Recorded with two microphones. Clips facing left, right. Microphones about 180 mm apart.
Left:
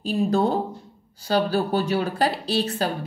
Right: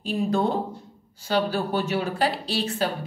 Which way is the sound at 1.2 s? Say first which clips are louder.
Left 2 dB; 40° left (ahead or behind).